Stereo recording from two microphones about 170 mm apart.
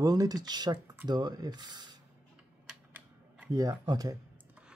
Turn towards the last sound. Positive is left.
turn(degrees=-20)  # may be behind; listen again after turning